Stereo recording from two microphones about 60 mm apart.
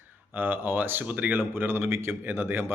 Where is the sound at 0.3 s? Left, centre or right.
Right.